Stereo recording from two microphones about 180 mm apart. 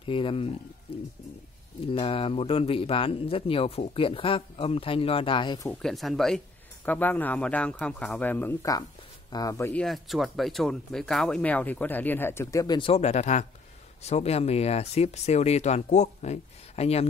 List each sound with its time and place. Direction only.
0.0 s speech: 30° left (ahead or behind)
1.9 s speech: 30° left (ahead or behind)
5.7 s speech: centre (ahead or behind); by 17.1 s 35° left (ahead or behind)